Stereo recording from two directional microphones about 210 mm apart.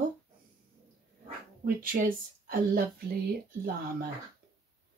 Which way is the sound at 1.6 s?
45° right (ahead or behind).